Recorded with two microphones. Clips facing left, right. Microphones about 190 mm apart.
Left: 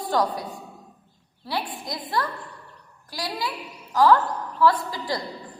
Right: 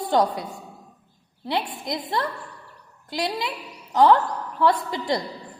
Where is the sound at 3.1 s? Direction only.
20° right (ahead or behind).